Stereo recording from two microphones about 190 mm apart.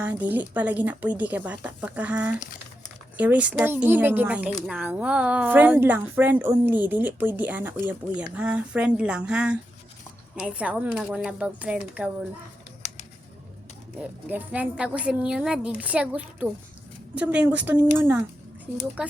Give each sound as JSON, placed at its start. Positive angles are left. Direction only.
{"t": 0.0, "sound": "speech", "side_deg": -10}
{"t": 14.0, "sound": "speech", "side_deg": -10}